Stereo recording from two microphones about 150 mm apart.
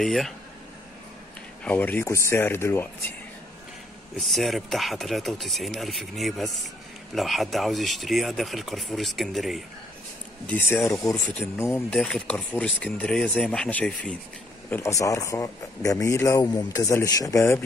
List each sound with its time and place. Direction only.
0.0 s speech: centre (ahead or behind)
1.6 s speech: 10° left (ahead or behind)
4.2 s speech: centre (ahead or behind)
10.4 s speech: 15° left (ahead or behind)
12.0 s speech: 5° left (ahead or behind)
14.7 s a man's voice: 20° left (ahead or behind)